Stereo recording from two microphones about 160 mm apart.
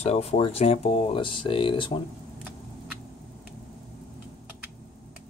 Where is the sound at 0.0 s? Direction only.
40° left (ahead or behind).